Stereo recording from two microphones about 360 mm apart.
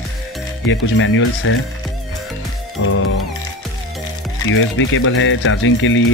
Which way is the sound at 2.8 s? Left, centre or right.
Left.